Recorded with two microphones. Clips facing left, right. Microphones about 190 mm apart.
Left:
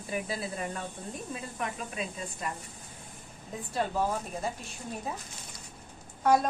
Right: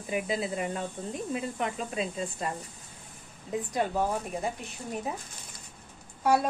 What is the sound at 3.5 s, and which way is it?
Speech, 20° right (ahead or behind).